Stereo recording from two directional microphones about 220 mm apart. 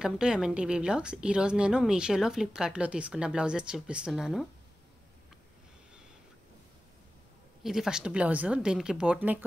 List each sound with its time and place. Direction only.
0.0 s a woman's voice: 5° right (ahead or behind)
7.6 s a woman's voice: centre (ahead or behind)